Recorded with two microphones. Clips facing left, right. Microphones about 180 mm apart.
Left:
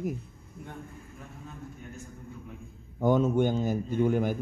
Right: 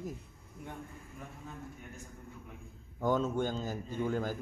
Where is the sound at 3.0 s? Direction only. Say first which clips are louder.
Left 7 dB; 20° left (ahead or behind).